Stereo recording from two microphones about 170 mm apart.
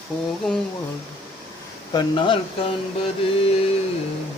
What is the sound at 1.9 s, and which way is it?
Speech, 30° left (ahead or behind).